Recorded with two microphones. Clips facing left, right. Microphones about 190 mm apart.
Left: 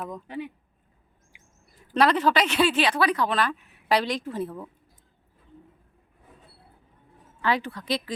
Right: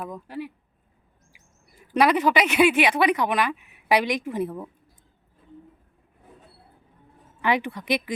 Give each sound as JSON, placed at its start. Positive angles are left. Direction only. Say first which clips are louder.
{"t": 0.0, "sound": "speech", "louder": "even", "side_deg": -5}
{"t": 1.9, "sound": "a woman's voice", "louder": "right 1 dB", "side_deg": -10}
{"t": 7.4, "sound": "a woman's voice", "louder": "right 2 dB", "side_deg": -15}